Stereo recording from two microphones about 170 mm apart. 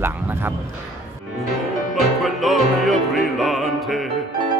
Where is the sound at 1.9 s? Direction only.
Centre (ahead or behind).